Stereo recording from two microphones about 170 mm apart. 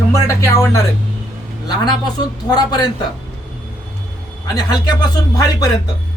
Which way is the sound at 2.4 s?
25° left (ahead or behind).